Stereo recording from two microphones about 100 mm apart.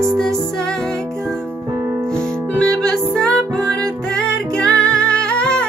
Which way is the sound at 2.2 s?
10° left (ahead or behind).